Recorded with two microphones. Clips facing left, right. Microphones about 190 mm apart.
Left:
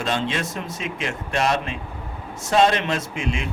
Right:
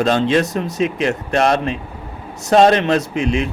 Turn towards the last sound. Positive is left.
turn(degrees=-35)  # may be behind; listen again after turning